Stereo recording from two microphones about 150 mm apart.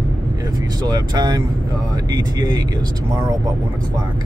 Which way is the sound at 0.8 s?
25° right (ahead or behind).